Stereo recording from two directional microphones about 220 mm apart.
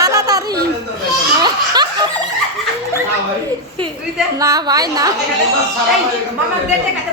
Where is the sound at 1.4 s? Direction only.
20° right (ahead or behind).